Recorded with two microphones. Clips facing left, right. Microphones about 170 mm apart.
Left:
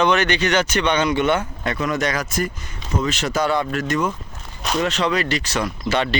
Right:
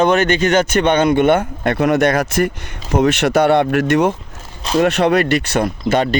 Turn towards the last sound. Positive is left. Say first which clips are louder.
# right 5 dB
turn(degrees=-45)  # may be behind; listen again after turning